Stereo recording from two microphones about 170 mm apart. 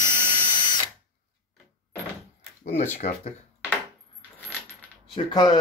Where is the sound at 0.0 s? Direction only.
50° left (ahead or behind).